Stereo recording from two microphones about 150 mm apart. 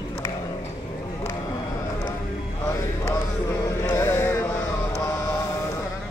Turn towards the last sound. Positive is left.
turn(degrees=15)  # may be behind; listen again after turning